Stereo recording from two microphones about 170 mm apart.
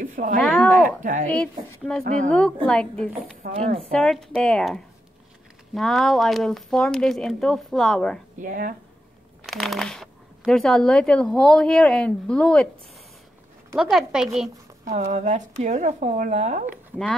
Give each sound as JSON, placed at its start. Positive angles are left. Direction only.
{"t": 0.0, "sound": "a sound", "side_deg": -55}
{"t": 0.4, "sound": "speech", "side_deg": 0}
{"t": 1.9, "sound": "speech", "side_deg": 5}
{"t": 3.5, "sound": "a woman's voice", "side_deg": -35}
{"t": 3.8, "sound": "speech", "side_deg": 0}
{"t": 8.4, "sound": "speech", "side_deg": -50}
{"t": 9.5, "sound": "speech", "side_deg": 0}
{"t": 13.7, "sound": "speech", "side_deg": 0}
{"t": 14.9, "sound": "speech", "side_deg": -45}